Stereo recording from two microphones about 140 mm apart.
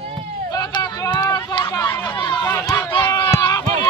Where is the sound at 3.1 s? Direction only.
25° left (ahead or behind).